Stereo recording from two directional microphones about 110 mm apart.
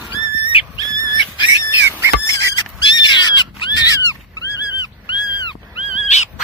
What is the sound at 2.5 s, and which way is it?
Pig, 40° left (ahead or behind).